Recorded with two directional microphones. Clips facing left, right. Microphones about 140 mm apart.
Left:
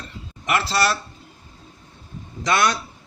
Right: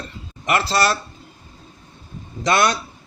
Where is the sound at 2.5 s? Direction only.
25° right (ahead or behind).